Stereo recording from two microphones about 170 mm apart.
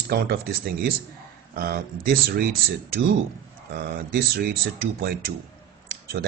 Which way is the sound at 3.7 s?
65° right (ahead or behind).